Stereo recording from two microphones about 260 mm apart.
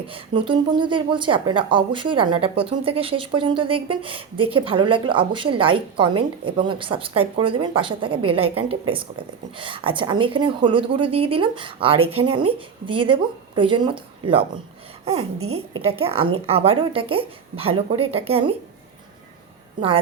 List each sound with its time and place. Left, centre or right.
0.1 s speech: centre
15.7 s speech: right